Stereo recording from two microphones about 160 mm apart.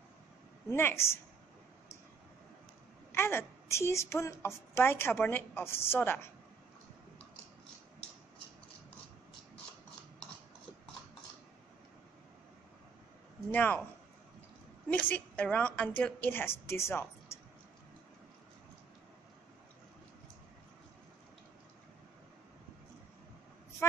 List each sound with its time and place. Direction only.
0.7 s a woman's voice: 15° left (ahead or behind)
3.1 s a woman's voice: 15° left (ahead or behind)
13.5 s a woman's voice: 10° left (ahead or behind)
14.9 s a woman's voice: 10° left (ahead or behind)